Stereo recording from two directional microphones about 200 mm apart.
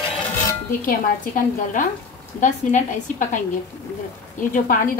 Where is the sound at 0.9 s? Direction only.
40° left (ahead or behind).